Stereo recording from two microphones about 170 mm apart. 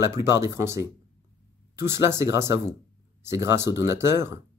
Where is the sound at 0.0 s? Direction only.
15° right (ahead or behind).